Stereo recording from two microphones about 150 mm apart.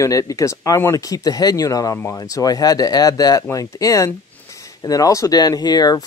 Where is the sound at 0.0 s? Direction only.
25° left (ahead or behind).